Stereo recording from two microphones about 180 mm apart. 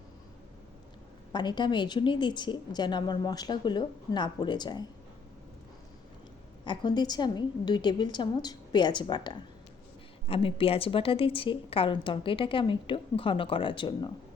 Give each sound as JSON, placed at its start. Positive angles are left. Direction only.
{"t": 1.3, "sound": "a woman's voice", "side_deg": 25}
{"t": 6.7, "sound": "a woman's voice", "side_deg": 25}